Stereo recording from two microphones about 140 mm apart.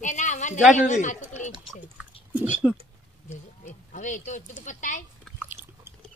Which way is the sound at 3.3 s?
60° left (ahead or behind).